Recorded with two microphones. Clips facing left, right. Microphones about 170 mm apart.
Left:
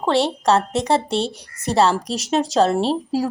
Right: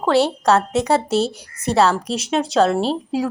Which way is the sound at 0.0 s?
Centre (ahead or behind).